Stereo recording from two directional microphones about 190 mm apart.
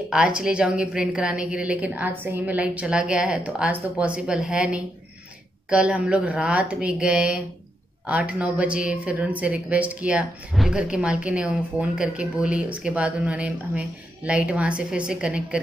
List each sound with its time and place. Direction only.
0.1 s a woman's voice: 5° right (ahead or behind)